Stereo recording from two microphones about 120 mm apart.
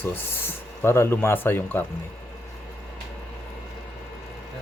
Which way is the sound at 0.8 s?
20° left (ahead or behind).